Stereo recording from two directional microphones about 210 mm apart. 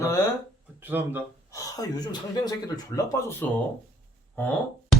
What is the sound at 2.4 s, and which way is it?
A man's voice, 20° left (ahead or behind).